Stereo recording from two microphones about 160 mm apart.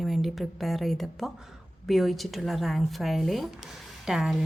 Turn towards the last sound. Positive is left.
turn(degrees=0)  # may be behind; listen again after turning